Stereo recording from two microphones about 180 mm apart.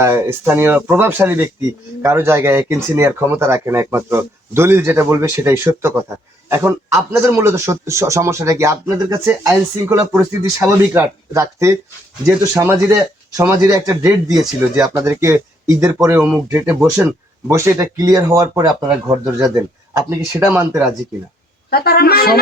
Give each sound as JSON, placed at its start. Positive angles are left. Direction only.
{"t": 0.0, "sound": "speech", "side_deg": -10}
{"t": 21.7, "sound": "speech", "side_deg": 60}